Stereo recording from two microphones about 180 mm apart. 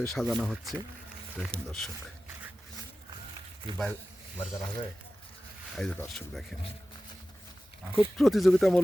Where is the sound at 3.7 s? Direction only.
30° right (ahead or behind).